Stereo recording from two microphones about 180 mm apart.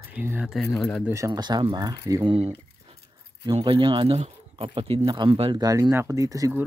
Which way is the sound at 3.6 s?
30° right (ahead or behind).